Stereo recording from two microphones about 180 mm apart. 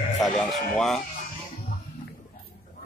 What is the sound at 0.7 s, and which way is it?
Speech, centre (ahead or behind).